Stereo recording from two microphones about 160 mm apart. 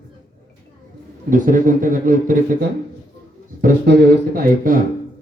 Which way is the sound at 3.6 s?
75° right (ahead or behind).